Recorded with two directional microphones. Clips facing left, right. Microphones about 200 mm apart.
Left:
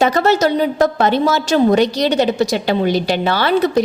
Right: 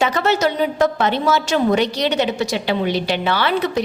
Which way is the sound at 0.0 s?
40° left (ahead or behind).